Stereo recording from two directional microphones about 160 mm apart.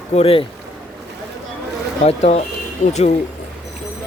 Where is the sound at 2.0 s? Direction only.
40° left (ahead or behind).